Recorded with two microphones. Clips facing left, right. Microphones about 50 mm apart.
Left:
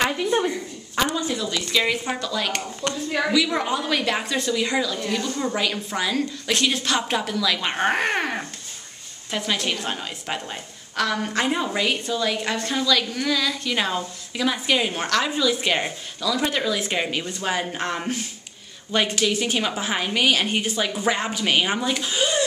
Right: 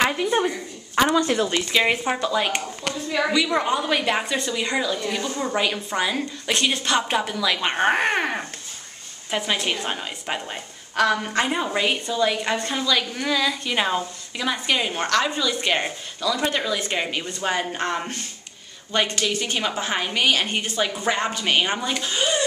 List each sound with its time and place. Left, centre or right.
0.0 s a woman's voice: centre
1.1 s a woman's voice: right
1.7 s speech: right
2.8 s a woman's voice: centre